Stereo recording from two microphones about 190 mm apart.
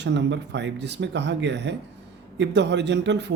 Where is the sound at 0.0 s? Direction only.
65° right (ahead or behind).